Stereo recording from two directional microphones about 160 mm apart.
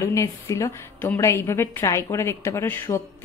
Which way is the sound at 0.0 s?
20° left (ahead or behind).